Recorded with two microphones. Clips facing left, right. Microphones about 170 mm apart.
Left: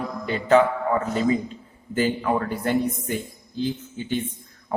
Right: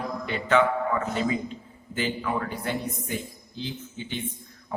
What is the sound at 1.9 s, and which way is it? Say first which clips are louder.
A man's voice: left 6 dB; 40° left (ahead or behind).